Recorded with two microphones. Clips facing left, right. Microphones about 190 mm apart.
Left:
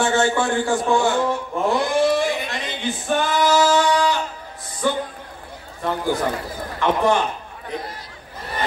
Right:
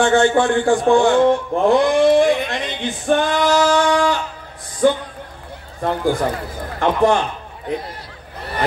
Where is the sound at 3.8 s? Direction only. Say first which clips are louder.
Right 2 dB; 50° right (ahead or behind).